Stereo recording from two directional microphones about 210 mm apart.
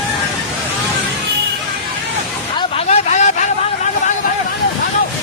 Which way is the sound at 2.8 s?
35° left (ahead or behind).